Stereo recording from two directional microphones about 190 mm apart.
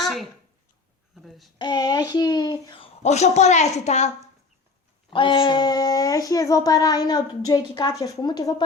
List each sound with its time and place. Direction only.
0.0 s a sound: centre (ahead or behind)
1.1 s a child's voice: centre (ahead or behind)
1.5 s speech: 20° left (ahead or behind)
5.1 s speech: 25° left (ahead or behind)